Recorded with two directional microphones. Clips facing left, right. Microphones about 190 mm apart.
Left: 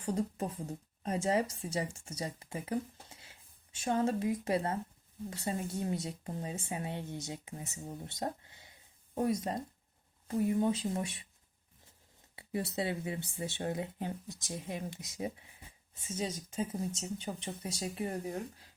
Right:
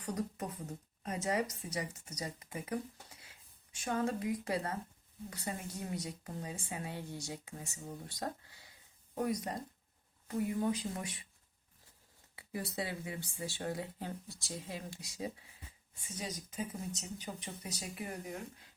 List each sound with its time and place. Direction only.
0.0 s a woman's voice: 25° left (ahead or behind)
12.4 s a woman's voice: 25° left (ahead or behind)